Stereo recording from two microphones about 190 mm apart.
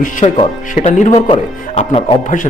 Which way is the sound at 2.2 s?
40° left (ahead or behind).